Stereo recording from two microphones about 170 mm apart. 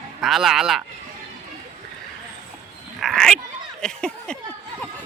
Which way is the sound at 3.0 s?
Centre (ahead or behind).